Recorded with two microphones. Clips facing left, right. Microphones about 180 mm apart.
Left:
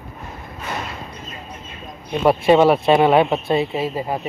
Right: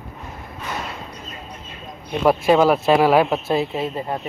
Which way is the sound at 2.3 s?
Centre (ahead or behind).